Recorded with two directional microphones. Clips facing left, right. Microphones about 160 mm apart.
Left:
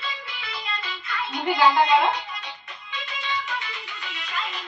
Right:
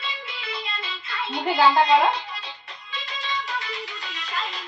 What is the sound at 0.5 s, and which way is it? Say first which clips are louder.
Music: even; 30° right (ahead or behind).